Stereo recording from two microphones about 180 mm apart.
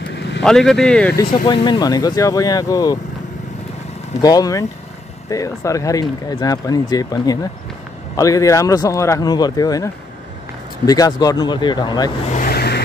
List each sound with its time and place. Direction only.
0.1 s vehicle: 75° left (ahead or behind)
0.4 s speech: centre (ahead or behind)
1.3 s speech: 30° left (ahead or behind)
4.2 s speech: 20° left (ahead or behind)
10.9 s speech: 20° left (ahead or behind)
12.3 s vehicle: 50° left (ahead or behind)